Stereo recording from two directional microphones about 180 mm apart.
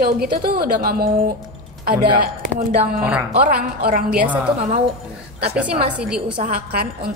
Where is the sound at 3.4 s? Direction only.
55° right (ahead or behind).